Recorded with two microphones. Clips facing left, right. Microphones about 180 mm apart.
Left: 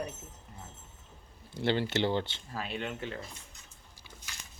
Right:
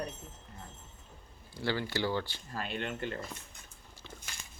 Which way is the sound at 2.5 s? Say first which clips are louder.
Even; centre (ahead or behind).